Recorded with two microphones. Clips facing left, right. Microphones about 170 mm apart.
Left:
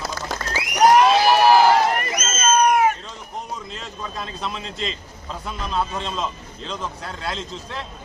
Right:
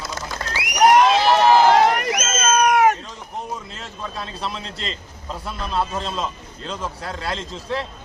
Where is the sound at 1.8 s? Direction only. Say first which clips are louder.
Right 3 dB; 80° right.